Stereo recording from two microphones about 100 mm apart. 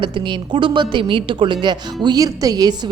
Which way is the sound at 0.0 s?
55° right (ahead or behind).